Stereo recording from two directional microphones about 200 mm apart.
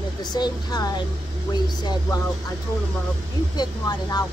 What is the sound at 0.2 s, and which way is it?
A woman's voice, 20° left (ahead or behind).